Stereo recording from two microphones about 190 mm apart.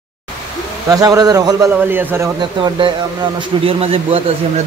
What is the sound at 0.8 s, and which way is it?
A man's voice, 20° right (ahead or behind).